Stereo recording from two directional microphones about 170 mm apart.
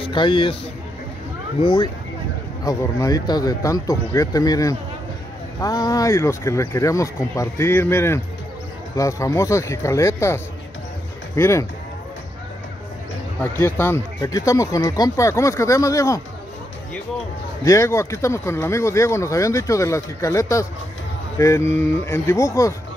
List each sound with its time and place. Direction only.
0.0 s speech: 30° left (ahead or behind)
1.6 s speech: 30° left (ahead or behind)
13.4 s speech: 15° left (ahead or behind)
17.6 s speech: 15° left (ahead or behind)